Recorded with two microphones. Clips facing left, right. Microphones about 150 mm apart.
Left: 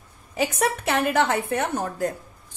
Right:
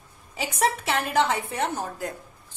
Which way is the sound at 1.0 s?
55° left (ahead or behind).